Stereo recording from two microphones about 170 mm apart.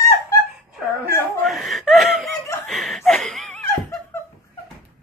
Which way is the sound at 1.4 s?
Centre (ahead or behind).